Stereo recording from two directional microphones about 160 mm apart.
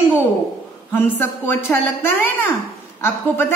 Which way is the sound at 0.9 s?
10° left (ahead or behind).